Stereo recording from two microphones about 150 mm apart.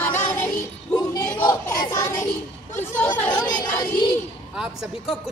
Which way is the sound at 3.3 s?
25° left (ahead or behind).